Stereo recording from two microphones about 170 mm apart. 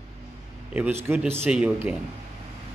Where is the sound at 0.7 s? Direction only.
10° right (ahead or behind).